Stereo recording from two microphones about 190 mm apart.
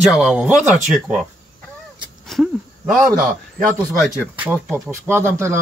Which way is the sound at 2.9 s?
Centre (ahead or behind).